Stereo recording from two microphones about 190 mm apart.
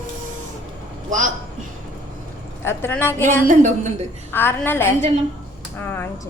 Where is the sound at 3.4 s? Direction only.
40° right (ahead or behind).